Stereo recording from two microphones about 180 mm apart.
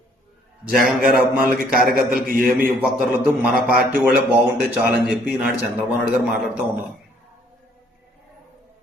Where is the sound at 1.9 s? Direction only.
55° right (ahead or behind).